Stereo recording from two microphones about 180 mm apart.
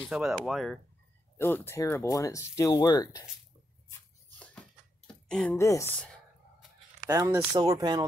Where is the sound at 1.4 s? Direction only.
10° left (ahead or behind).